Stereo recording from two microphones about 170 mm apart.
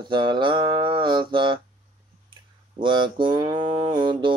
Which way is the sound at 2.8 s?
30° right (ahead or behind).